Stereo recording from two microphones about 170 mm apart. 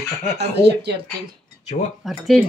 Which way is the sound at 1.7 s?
40° left (ahead or behind).